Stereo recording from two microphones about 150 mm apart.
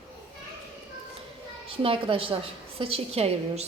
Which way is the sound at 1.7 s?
35° right (ahead or behind).